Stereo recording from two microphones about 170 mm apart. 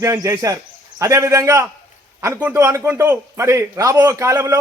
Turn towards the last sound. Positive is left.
turn(degrees=-15)  # may be behind; listen again after turning